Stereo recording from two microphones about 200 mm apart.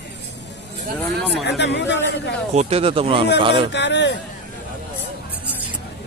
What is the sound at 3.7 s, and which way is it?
Speech, 60° left (ahead or behind).